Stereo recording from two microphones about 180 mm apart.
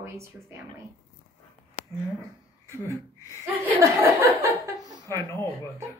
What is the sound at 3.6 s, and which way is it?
Speech, 15° right (ahead or behind).